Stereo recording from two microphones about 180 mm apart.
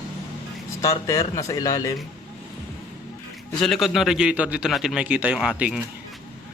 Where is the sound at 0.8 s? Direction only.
15° left (ahead or behind).